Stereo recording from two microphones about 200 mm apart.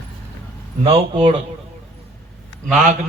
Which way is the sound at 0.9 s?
25° right (ahead or behind).